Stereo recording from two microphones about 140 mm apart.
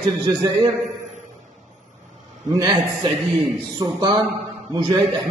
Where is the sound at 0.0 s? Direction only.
30° right (ahead or behind).